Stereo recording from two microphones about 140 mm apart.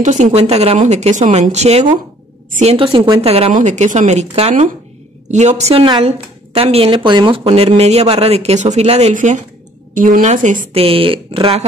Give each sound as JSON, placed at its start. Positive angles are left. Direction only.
{"t": 0.0, "sound": "a woman's voice", "side_deg": -55}
{"t": 3.5, "sound": "a woman's voice", "side_deg": -55}
{"t": 5.9, "sound": "a woman's voice", "side_deg": -40}
{"t": 9.1, "sound": "a woman's voice", "side_deg": -60}
{"t": 10.7, "sound": "speech", "side_deg": -45}